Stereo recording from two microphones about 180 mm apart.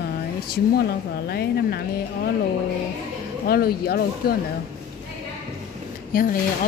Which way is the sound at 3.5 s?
60° left (ahead or behind).